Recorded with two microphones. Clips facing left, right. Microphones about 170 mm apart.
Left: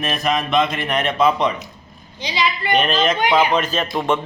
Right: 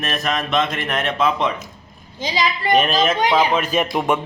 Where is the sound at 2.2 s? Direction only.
40° right (ahead or behind).